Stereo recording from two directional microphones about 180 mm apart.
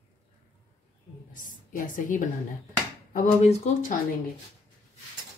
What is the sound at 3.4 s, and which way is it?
Speech, 40° left (ahead or behind).